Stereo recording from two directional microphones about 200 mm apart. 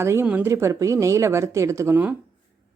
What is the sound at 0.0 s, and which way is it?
A woman's voice, 10° right (ahead or behind).